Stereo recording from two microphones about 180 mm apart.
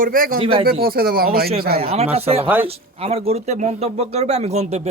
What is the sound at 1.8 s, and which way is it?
Speech, 35° right (ahead or behind).